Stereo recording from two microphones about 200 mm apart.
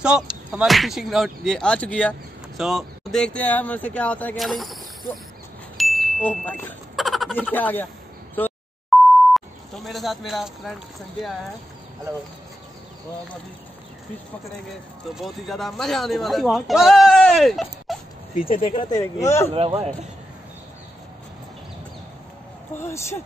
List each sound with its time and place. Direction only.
0.5 s speech: centre (ahead or behind)
5.8 s a sound: centre (ahead or behind)
7.5 s speech: 10° left (ahead or behind)
8.4 s a sound: 5° left (ahead or behind)
9.8 s speech: centre (ahead or behind)
15.1 s speech: centre (ahead or behind)
18.6 s speech: 25° left (ahead or behind)
19.5 s speech: 30° right (ahead or behind)
22.8 s speech: 15° left (ahead or behind)